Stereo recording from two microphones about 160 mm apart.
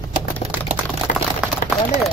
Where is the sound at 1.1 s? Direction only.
65° left (ahead or behind).